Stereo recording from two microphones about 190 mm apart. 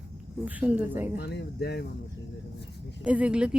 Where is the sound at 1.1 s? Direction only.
60° left (ahead or behind).